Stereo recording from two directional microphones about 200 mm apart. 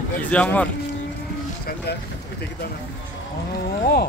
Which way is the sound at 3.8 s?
50° left (ahead or behind).